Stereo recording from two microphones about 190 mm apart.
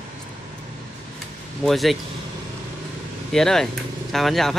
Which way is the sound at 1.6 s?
Centre (ahead or behind).